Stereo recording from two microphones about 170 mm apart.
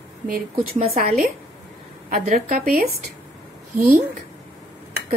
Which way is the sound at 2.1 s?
55° right (ahead or behind).